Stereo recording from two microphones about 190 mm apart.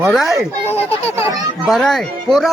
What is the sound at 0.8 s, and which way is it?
Speech, 30° left (ahead or behind).